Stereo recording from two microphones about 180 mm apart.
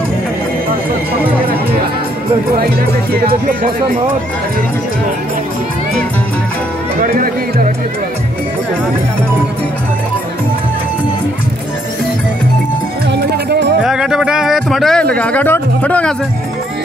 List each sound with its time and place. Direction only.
7.0 s music: 45° right (ahead or behind)
13.1 s music: 70° right (ahead or behind)
13.8 s a sound: 5° right (ahead or behind)